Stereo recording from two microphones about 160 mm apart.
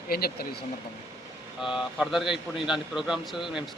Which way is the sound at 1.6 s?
5° right (ahead or behind).